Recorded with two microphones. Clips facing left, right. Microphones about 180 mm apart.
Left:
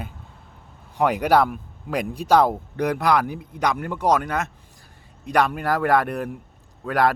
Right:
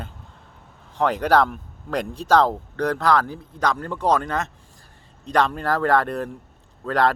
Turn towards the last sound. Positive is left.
turn(degrees=10)  # may be behind; listen again after turning